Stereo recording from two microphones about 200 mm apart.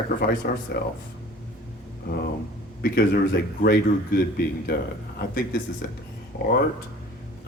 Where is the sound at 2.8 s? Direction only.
50° left (ahead or behind).